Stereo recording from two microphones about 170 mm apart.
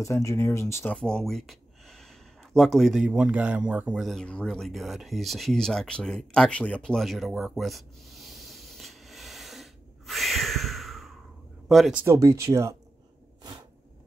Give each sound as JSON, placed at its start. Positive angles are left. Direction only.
{"t": 0.0, "sound": "speech", "side_deg": 20}
{"t": 0.9, "sound": "a sound", "side_deg": 5}
{"t": 2.5, "sound": "speech", "side_deg": 0}